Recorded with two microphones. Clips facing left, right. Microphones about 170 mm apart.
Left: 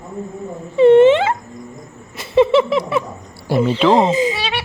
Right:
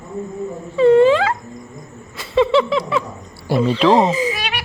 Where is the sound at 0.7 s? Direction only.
25° left (ahead or behind).